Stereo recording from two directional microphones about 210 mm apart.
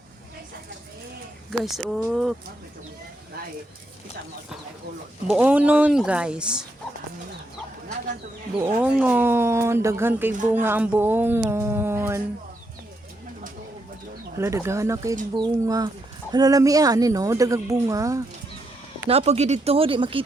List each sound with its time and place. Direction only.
1.6 s speech: centre (ahead or behind)
5.3 s speech: 5° right (ahead or behind)
8.6 s speech: 10° right (ahead or behind)
14.3 s speech: 15° right (ahead or behind)
19.0 s speech: 30° right (ahead or behind)